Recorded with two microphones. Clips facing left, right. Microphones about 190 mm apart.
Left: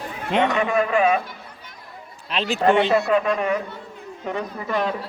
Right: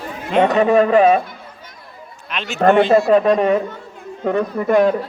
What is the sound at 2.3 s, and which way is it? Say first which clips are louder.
Speech: left 3 dB; 30° left (ahead or behind).